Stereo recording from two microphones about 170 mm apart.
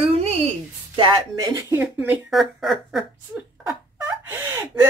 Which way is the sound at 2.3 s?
Centre (ahead or behind).